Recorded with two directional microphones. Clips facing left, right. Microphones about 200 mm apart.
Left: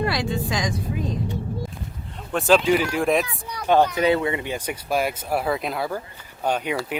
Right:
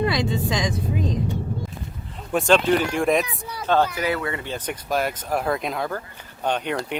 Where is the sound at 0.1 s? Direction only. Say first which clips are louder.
Right 1 dB; 20° right (ahead or behind).